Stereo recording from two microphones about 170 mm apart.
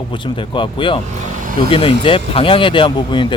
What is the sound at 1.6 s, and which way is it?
Speech, 30° left (ahead or behind).